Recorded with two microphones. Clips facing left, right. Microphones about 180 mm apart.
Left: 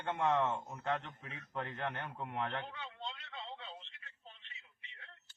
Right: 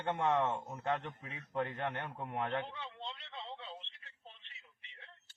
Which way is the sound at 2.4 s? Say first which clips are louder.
Right 3 dB; 15° right (ahead or behind).